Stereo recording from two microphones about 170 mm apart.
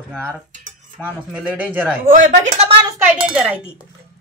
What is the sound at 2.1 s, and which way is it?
Speech, 50° right (ahead or behind).